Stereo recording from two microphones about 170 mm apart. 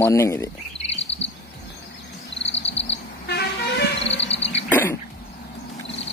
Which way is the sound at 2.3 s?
90° left.